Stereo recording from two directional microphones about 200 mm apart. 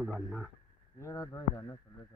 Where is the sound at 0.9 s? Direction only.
15° left (ahead or behind).